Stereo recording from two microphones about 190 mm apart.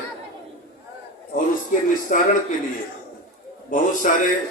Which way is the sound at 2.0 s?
45° left (ahead or behind).